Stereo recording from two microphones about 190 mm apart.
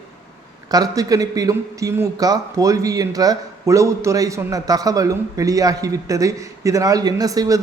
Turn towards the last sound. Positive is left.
turn(degrees=-20)  # may be behind; listen again after turning